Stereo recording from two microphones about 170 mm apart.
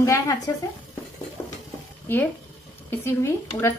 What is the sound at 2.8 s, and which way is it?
Speech, 15° left (ahead or behind).